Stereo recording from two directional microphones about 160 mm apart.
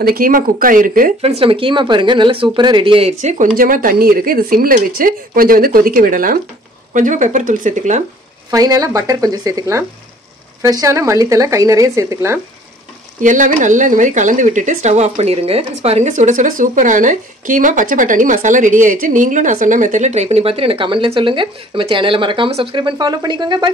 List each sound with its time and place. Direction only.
0.0 s speech: 65° right (ahead or behind)
1.2 s speech: 35° right (ahead or behind)
8.5 s speech: 20° right (ahead or behind)
13.2 s speech: 50° right (ahead or behind); by 23.7 s 30° right (ahead or behind)